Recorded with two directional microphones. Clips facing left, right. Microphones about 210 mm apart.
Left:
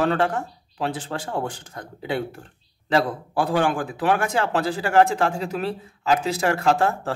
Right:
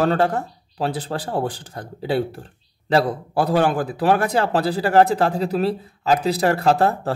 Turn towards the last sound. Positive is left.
turn(degrees=-35)  # may be behind; listen again after turning